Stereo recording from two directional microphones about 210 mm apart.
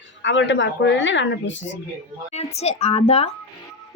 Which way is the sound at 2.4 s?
30° left (ahead or behind).